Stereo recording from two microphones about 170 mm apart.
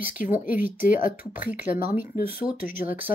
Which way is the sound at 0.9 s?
50° left (ahead or behind).